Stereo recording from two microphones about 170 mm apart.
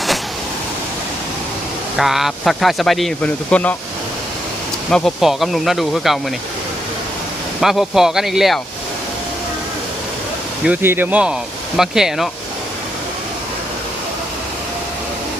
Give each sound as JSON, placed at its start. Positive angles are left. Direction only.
{"t": 2.0, "sound": "speech", "side_deg": 0}
{"t": 4.9, "sound": "speech", "side_deg": 5}
{"t": 7.6, "sound": "speech", "side_deg": 0}
{"t": 10.7, "sound": "speech", "side_deg": -10}